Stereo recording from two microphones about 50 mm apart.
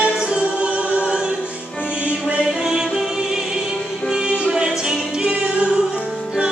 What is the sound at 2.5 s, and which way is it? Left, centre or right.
Music, centre.